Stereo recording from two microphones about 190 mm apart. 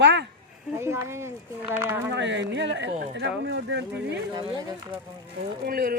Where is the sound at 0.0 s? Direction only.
65° right (ahead or behind).